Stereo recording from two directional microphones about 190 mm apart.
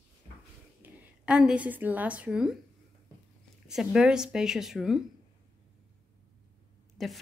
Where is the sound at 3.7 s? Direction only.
5° right (ahead or behind).